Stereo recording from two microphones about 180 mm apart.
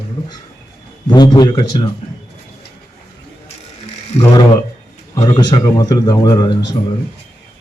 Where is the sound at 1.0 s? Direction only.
25° left (ahead or behind).